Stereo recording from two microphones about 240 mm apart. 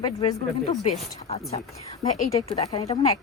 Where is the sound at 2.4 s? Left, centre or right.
Centre.